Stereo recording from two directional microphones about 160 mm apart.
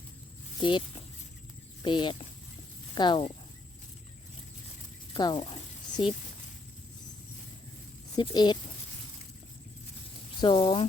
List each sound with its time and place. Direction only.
0.6 s speech: 30° left (ahead or behind)
5.1 s speech: 30° left (ahead or behind)
8.1 s speech: 25° left (ahead or behind)
10.4 s speech: 30° left (ahead or behind)